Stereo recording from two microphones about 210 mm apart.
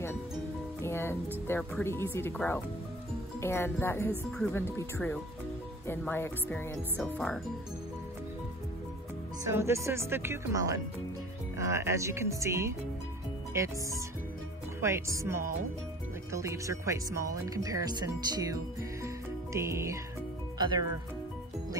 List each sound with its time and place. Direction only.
0.8 s music: 10° left (ahead or behind)
1.5 s speech: 10° left (ahead or behind)
9.4 s speech: 15° right (ahead or behind)